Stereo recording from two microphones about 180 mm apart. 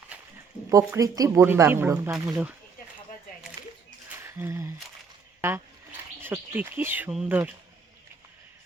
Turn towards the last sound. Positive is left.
turn(degrees=-10)  # may be behind; listen again after turning